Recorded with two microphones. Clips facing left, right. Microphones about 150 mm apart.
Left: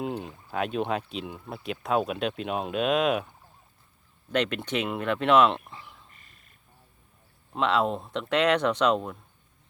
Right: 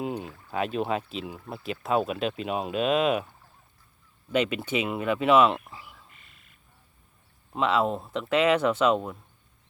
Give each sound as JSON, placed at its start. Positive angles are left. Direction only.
{"t": 0.0, "sound": "speech", "side_deg": 0}
{"t": 4.3, "sound": "speech", "side_deg": -5}
{"t": 6.1, "sound": "a sound", "side_deg": 40}
{"t": 7.5, "sound": "speech", "side_deg": 0}